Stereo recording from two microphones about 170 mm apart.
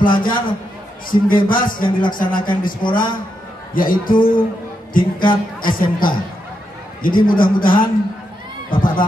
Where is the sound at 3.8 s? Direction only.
55° left (ahead or behind).